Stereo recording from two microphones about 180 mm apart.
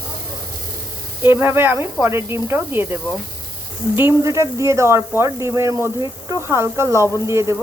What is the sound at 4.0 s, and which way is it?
Speech, 15° right (ahead or behind).